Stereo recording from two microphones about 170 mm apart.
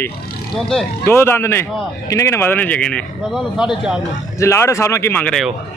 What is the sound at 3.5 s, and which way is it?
Speech, 5° right (ahead or behind).